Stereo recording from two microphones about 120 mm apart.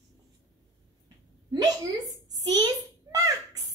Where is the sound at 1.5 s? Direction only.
30° right (ahead or behind).